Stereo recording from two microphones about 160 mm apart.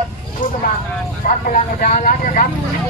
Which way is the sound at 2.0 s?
55° left (ahead or behind).